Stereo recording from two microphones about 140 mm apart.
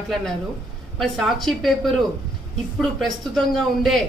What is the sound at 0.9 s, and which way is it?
Speech, centre (ahead or behind).